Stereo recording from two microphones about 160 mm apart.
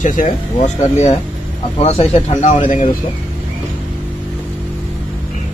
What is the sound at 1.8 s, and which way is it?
Speech, 40° left (ahead or behind).